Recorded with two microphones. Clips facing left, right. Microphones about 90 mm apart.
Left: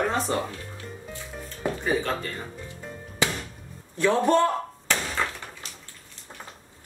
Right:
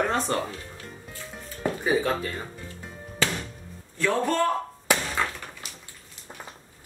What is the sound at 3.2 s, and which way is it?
Music, 15° left (ahead or behind).